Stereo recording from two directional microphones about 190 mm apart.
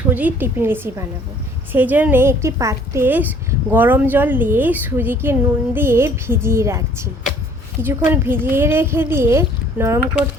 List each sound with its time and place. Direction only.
0.1 s a woman's voice: 10° right (ahead or behind)